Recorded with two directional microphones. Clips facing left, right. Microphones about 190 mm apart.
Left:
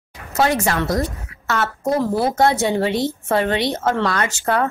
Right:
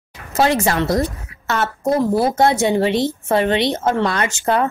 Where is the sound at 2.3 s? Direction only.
20° right (ahead or behind).